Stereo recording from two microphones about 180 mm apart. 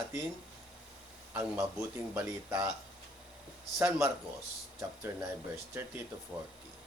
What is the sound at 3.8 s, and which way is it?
Speech, 15° right (ahead or behind).